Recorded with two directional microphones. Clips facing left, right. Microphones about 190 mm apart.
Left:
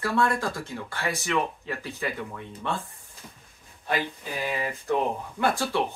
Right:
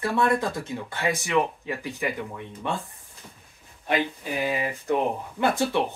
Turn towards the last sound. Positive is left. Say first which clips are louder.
# right 2 dB
turn(degrees=-20)  # may be behind; listen again after turning